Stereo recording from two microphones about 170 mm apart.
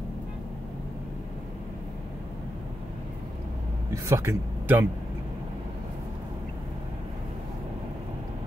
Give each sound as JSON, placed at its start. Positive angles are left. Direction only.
{"t": 3.9, "sound": "speech", "side_deg": -15}